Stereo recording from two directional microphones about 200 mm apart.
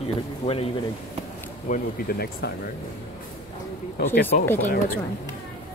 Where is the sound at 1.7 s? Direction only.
50° left (ahead or behind).